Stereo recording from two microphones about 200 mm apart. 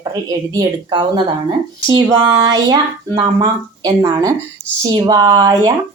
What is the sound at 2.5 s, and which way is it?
Speech, 20° right (ahead or behind).